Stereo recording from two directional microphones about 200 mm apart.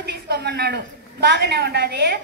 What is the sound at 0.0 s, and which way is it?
A woman's voice, 55° right (ahead or behind).